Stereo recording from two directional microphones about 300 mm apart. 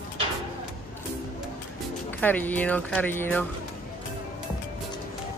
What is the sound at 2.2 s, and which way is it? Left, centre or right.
Speech, centre.